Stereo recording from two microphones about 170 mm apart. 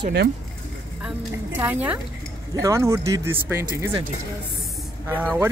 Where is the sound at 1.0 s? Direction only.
10° right (ahead or behind).